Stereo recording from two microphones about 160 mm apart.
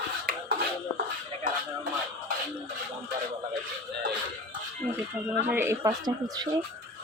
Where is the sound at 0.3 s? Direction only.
65° right (ahead or behind).